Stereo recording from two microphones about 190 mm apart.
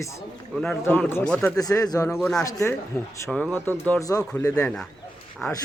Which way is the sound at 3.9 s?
15° left (ahead or behind).